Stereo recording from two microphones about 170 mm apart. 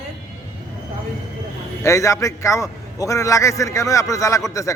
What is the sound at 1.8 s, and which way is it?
A man's voice, 15° left (ahead or behind).